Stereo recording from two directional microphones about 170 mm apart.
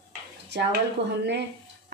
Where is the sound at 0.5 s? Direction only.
85° right.